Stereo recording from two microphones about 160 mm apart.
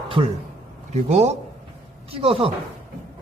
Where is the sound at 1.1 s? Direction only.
45° right (ahead or behind).